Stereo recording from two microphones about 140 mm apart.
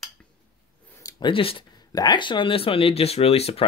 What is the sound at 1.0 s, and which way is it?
Speech, 30° left (ahead or behind).